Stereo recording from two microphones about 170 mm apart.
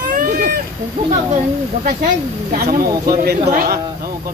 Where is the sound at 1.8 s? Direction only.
55° right (ahead or behind).